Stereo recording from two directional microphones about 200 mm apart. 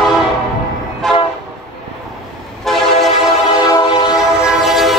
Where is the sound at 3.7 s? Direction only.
20° left (ahead or behind).